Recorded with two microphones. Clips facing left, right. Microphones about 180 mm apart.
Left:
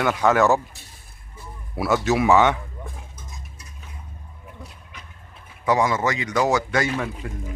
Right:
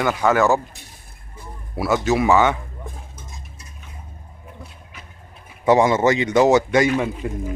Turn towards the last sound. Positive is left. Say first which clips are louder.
# right 6 dB
turn(degrees=-20)  # may be behind; listen again after turning